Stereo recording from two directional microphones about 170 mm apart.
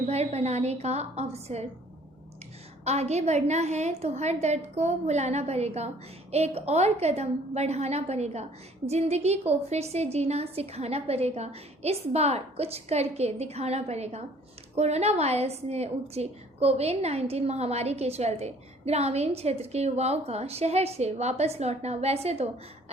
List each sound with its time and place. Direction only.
0.1 s a woman's voice: 40° right (ahead or behind)
2.8 s a woman's voice: 40° right (ahead or behind)